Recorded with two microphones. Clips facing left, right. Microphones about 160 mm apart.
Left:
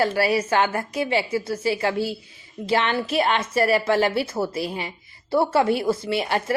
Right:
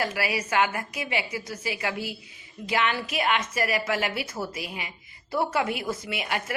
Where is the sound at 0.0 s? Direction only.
30° left (ahead or behind).